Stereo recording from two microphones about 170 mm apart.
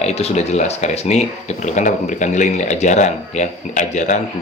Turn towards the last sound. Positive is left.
turn(degrees=45)  # may be behind; listen again after turning